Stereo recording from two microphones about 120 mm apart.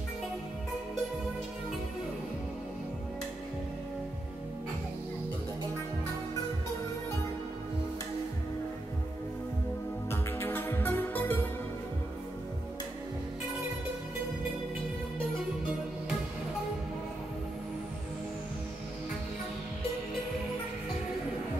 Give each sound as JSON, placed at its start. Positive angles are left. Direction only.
{"t": 10.1, "sound": "music", "side_deg": 20}